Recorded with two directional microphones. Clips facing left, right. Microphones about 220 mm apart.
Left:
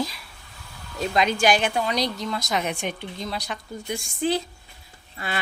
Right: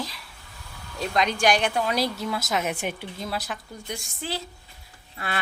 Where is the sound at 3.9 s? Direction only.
15° left (ahead or behind).